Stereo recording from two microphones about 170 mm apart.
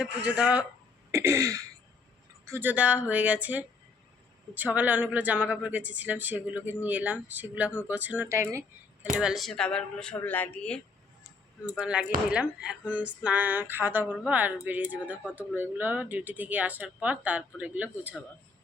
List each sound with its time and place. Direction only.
0.0 s speech: 5° right (ahead or behind)
9.1 s speech: centre (ahead or behind)
11.8 s speech: 5° right (ahead or behind)